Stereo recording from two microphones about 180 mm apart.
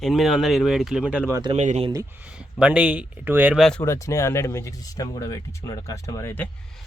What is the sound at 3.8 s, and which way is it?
Speech, 15° left (ahead or behind).